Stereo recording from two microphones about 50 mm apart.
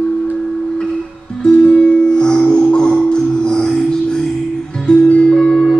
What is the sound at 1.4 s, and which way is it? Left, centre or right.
Music, centre.